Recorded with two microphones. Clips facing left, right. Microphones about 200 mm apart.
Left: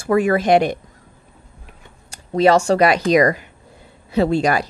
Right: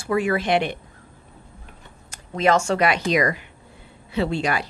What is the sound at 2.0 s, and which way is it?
Speech, 35° left (ahead or behind).